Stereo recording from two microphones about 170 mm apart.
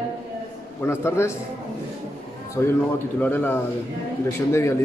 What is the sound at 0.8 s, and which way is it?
Speech, 15° left (ahead or behind).